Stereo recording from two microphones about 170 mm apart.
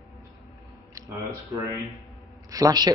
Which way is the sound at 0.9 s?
20° right (ahead or behind).